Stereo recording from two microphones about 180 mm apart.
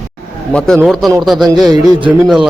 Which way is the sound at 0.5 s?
5° left (ahead or behind).